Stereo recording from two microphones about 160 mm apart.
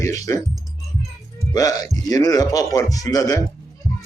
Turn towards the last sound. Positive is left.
turn(degrees=20)  # may be behind; listen again after turning